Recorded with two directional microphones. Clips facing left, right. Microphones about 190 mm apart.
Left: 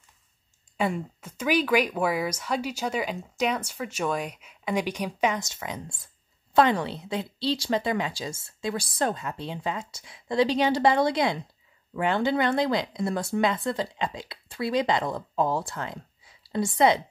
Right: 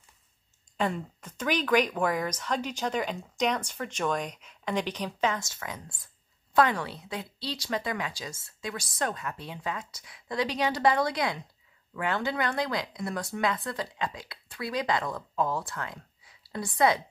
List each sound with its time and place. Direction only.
0.7 s speech: 10° left (ahead or behind)